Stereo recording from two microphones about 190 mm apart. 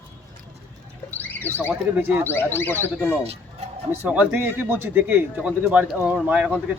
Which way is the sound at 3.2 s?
35° right (ahead or behind).